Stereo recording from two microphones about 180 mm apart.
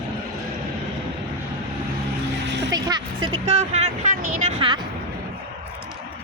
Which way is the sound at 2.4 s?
80° right.